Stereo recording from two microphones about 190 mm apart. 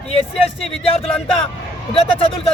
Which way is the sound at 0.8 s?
30° left (ahead or behind).